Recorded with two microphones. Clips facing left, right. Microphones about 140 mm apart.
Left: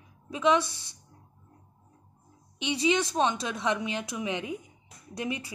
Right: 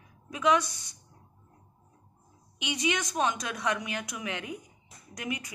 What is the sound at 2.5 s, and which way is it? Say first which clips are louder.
A woman's voice: left 5 dB; 30° left (ahead or behind).